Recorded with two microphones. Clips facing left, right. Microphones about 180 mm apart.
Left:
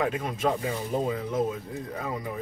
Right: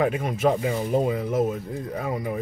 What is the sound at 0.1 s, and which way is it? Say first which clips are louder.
Speech: right 5 dB; 10° right (ahead or behind).